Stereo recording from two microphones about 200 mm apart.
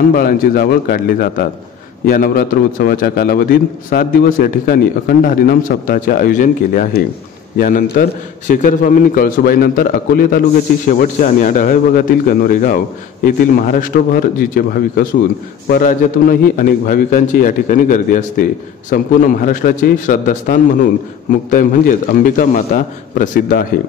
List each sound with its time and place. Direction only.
0.1 s a man's voice: 50° left (ahead or behind)